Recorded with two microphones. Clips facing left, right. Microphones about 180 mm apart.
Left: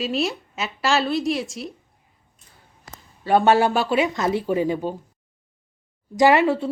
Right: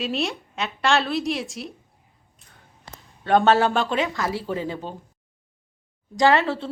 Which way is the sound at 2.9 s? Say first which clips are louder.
Left 1 dB; 5° left (ahead or behind).